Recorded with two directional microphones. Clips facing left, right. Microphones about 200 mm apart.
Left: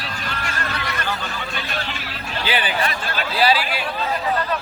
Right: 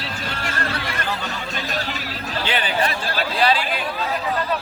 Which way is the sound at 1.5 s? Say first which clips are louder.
Right 2 dB; 40° right (ahead or behind).